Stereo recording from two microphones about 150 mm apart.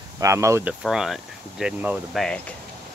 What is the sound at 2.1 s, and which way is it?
Speech, 5° left (ahead or behind).